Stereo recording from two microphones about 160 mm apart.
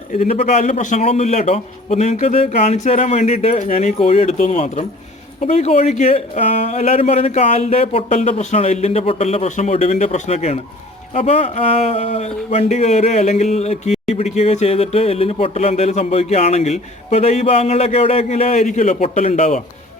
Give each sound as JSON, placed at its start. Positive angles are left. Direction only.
{"t": 0.2, "sound": "speech", "side_deg": 40}